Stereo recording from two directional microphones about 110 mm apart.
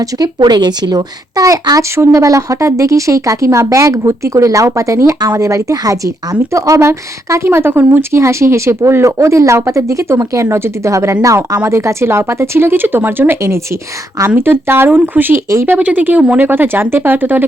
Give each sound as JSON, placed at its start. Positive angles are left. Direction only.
{"t": 0.0, "sound": "speech", "side_deg": -35}